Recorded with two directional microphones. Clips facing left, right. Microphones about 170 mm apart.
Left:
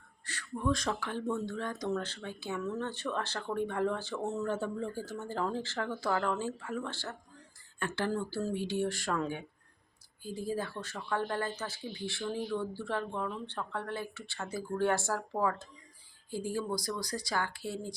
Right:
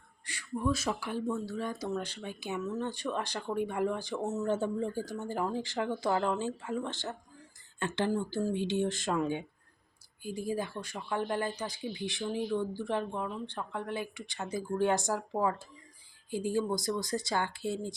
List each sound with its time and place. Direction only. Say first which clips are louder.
0.3 s speech: right 1 dB; 10° right (ahead or behind)
4.4 s speech: right 3 dB; 20° right (ahead or behind)